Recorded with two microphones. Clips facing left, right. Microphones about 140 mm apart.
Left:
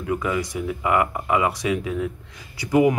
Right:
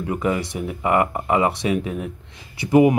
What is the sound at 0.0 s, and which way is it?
Speech, 30° right (ahead or behind).